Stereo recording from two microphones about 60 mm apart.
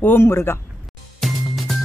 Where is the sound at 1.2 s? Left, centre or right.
Centre.